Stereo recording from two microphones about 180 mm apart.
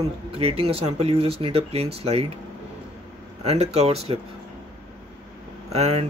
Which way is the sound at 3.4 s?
35° right (ahead or behind).